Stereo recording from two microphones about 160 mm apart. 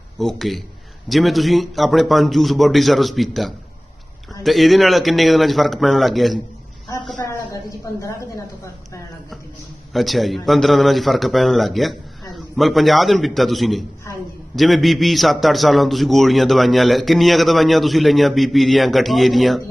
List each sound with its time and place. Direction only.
0.2 s a man's voice: centre (ahead or behind)
6.8 s a sound: 25° left (ahead or behind)
8.0 s a woman's voice: 20° left (ahead or behind)
9.9 s a man's voice: centre (ahead or behind)